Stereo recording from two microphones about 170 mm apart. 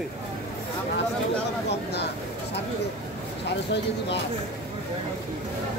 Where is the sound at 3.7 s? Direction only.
90° left.